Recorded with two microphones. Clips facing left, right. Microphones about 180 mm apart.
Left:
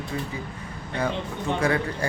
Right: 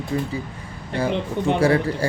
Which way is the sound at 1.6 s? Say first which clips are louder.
Right 5 dB; 30° right (ahead or behind).